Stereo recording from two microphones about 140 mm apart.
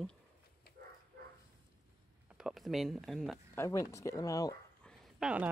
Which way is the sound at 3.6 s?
20° left (ahead or behind).